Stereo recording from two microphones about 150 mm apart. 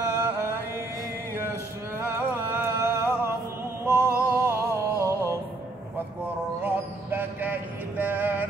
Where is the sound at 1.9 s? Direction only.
15° right (ahead or behind).